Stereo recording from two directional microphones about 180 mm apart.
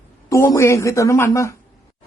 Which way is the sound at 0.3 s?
15° left (ahead or behind).